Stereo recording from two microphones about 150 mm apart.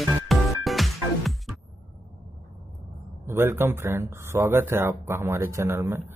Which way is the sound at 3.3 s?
15° right (ahead or behind).